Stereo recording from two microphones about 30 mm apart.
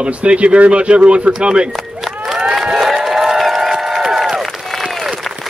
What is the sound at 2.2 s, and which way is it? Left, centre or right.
Crowd, centre.